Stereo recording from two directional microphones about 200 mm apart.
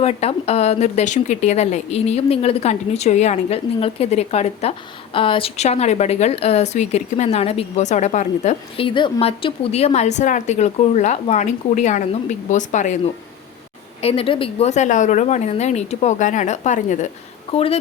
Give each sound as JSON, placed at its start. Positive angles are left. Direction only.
{"t": 0.0, "sound": "a woman's voice", "side_deg": 30}
{"t": 14.0, "sound": "a woman's voice", "side_deg": 30}